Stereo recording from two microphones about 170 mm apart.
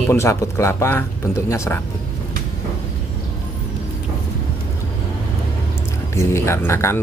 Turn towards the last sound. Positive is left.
turn(degrees=15)  # may be behind; listen again after turning